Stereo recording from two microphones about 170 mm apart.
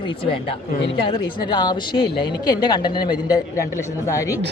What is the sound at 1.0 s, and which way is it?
A woman's voice, 30° left (ahead or behind).